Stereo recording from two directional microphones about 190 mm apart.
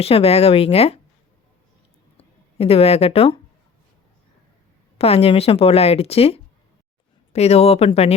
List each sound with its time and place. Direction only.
0.0 s speech: 30° left (ahead or behind)
2.1 s speech: 30° left (ahead or behind)
4.9 s speech: 30° left (ahead or behind)